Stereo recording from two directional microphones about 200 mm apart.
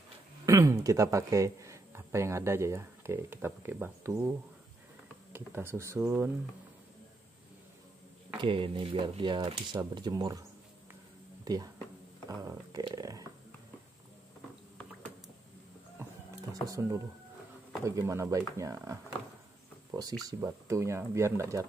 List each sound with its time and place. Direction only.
0.5 s speech: 15° right (ahead or behind)
8.4 s speech: 25° right (ahead or behind)
11.4 s speech: 20° right (ahead or behind)
16.6 s speech: 15° right (ahead or behind)